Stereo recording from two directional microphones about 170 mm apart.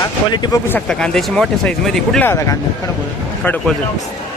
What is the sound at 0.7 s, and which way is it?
Speech, 5° left (ahead or behind).